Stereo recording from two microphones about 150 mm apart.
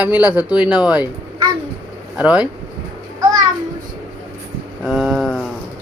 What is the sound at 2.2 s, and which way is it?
Speech, 10° right (ahead or behind).